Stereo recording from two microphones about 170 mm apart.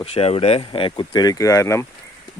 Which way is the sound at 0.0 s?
35° left (ahead or behind).